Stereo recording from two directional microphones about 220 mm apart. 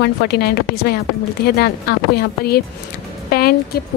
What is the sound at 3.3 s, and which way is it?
Music, 45° left (ahead or behind).